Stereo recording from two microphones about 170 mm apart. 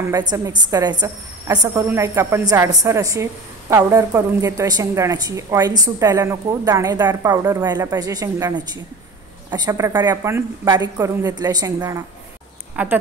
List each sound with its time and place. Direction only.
0.1 s a woman's voice: 25° right (ahead or behind)
12.7 s speech: 10° right (ahead or behind)